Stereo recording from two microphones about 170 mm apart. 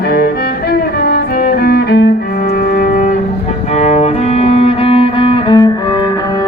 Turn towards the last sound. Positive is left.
turn(degrees=25)  # may be behind; listen again after turning